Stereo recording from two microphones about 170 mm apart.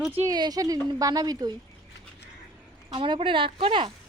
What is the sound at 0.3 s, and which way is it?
A woman's voice, 25° right (ahead or behind).